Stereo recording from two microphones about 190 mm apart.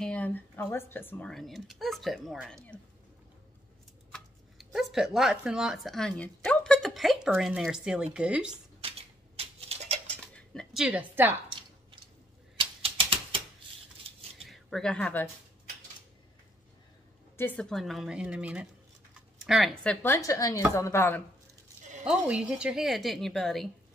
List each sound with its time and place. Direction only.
0.0 s speech: 5° left (ahead or behind)
4.1 s speech: centre (ahead or behind)
9.4 s a sound: 30° right (ahead or behind)
10.2 s a sound: 5° left (ahead or behind)
12.5 s typewriter: 30° right (ahead or behind)
14.0 s a sound: 30° right (ahead or behind)
14.4 s speech: centre (ahead or behind)
17.4 s speech: 5° left (ahead or behind)
22.0 s speech: 5° right (ahead or behind)